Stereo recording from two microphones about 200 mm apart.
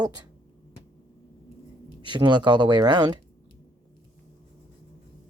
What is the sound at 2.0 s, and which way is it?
Speech, 20° right (ahead or behind).